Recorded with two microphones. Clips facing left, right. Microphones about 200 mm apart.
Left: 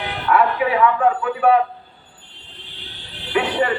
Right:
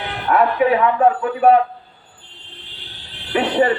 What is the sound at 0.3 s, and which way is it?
Music, 40° right (ahead or behind).